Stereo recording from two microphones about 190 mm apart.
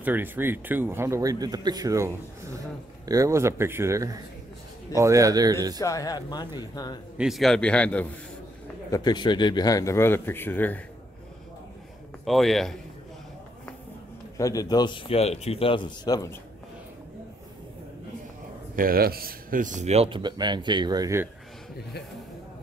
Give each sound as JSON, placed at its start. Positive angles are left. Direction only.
{"t": 0.0, "sound": "speech", "side_deg": -10}
{"t": 5.8, "sound": "speech", "side_deg": 20}
{"t": 7.2, "sound": "a man's voice", "side_deg": 0}
{"t": 8.9, "sound": "speech", "side_deg": 20}
{"t": 12.3, "sound": "a man's voice", "side_deg": 0}
{"t": 14.3, "sound": "speech", "side_deg": 15}
{"t": 18.8, "sound": "speech", "side_deg": -50}